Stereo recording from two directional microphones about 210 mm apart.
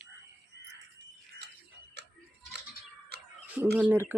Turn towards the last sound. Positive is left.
turn(degrees=-5)  # may be behind; listen again after turning